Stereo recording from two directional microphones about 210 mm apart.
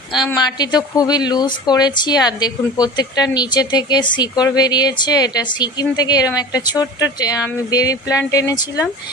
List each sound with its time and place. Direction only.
0.3 s a woman's voice: 20° left (ahead or behind)